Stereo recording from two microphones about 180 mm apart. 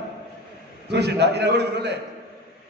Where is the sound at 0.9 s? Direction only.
70° right (ahead or behind).